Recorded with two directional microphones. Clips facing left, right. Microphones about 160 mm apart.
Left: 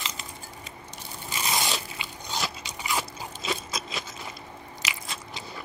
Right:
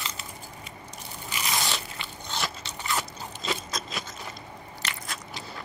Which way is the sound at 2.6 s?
10° left (ahead or behind).